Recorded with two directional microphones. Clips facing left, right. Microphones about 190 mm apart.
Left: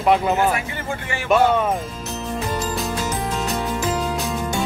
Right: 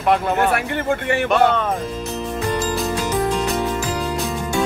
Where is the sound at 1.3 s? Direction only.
10° left (ahead or behind).